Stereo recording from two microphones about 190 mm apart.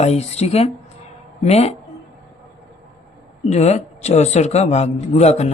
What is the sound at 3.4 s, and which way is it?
A man's voice, 35° left (ahead or behind).